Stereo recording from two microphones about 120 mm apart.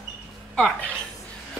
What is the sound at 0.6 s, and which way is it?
Speech, 15° left (ahead or behind).